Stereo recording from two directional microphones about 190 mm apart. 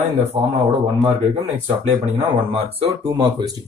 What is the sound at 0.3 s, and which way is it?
Speech, 25° right (ahead or behind).